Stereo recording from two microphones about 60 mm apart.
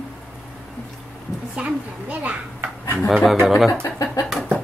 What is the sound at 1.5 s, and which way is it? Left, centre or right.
Speech, right.